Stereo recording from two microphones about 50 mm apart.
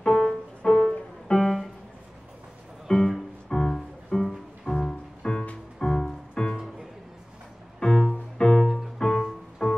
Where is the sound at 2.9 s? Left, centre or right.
Centre.